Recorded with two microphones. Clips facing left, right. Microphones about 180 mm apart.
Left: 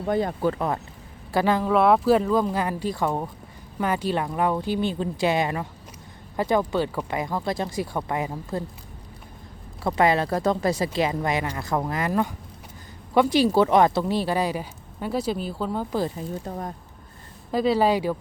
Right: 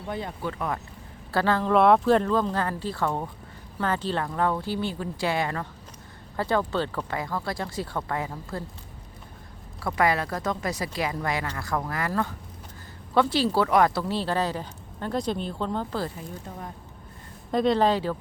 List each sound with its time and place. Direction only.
0.1 s speech: 45° left (ahead or behind)
1.3 s speech: 15° left (ahead or behind)
1.7 s speech: centre (ahead or behind); by 8.6 s 20° left (ahead or behind)
9.8 s speech: 25° left (ahead or behind)
16.5 s speech: 40° left (ahead or behind)
17.5 s speech: 5° left (ahead or behind)